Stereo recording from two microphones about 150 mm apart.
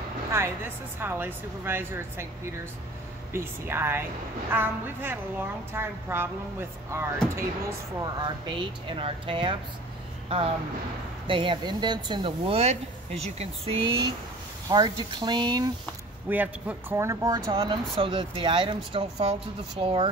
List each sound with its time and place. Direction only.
0.3 s a woman's voice: 15° right (ahead or behind)
8.0 s speech: 30° right (ahead or behind)
16.3 s speech: 10° right (ahead or behind); by 20.1 s 35° right (ahead or behind)